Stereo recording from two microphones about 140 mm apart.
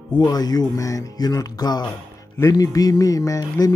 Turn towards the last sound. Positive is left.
turn(degrees=25)  # may be behind; listen again after turning